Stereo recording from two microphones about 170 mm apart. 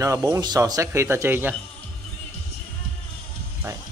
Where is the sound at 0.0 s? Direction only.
15° right (ahead or behind).